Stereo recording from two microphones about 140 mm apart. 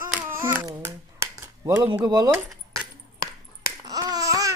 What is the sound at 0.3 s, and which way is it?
Hands, 15° right (ahead or behind).